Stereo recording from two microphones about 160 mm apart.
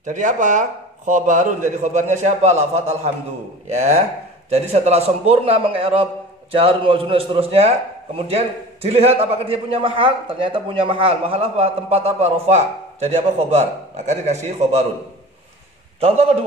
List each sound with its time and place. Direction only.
0.0 s a man's voice: 50° right (ahead or behind)
16.0 s a man's voice: 40° right (ahead or behind)